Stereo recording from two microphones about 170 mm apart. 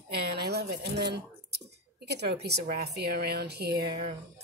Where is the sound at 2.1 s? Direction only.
75° right (ahead or behind).